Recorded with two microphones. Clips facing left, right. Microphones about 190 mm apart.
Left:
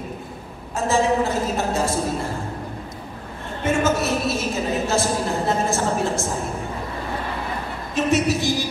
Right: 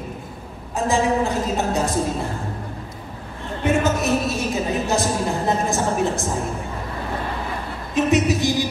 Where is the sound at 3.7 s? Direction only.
15° right (ahead or behind).